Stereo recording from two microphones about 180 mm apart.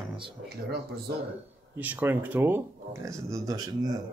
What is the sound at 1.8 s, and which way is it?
Speech, 10° right (ahead or behind).